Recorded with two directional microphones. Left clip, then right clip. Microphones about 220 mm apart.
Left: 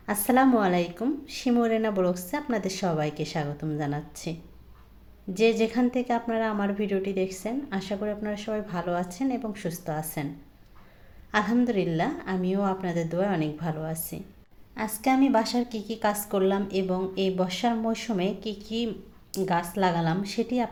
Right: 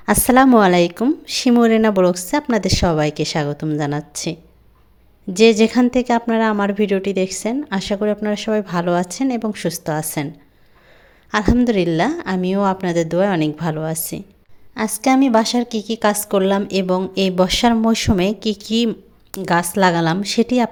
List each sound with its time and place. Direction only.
0.0 s a woman's voice: 45° right (ahead or behind)
11.3 s a woman's voice: 45° right (ahead or behind)